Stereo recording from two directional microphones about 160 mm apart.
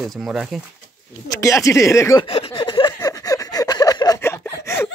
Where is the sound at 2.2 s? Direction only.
35° left (ahead or behind); by 4.8 s 15° left (ahead or behind).